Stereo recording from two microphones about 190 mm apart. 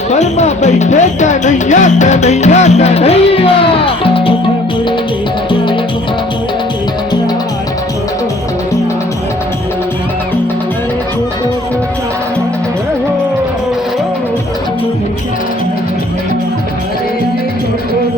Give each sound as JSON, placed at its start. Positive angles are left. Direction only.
{"t": 0.1, "sound": "speech", "side_deg": 35}